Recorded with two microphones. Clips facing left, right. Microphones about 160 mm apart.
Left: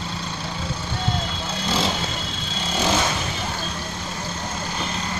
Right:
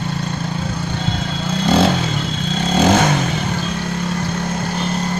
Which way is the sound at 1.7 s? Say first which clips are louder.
Right 9 dB; 60° right (ahead or behind).